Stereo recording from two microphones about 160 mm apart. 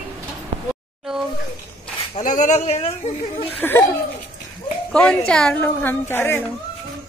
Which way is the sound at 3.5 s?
10° left (ahead or behind).